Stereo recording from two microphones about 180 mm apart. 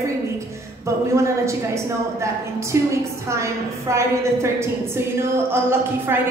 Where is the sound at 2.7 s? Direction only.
15° right (ahead or behind).